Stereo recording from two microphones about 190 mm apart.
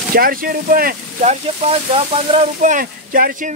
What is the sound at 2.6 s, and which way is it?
Speech, 45° right (ahead or behind).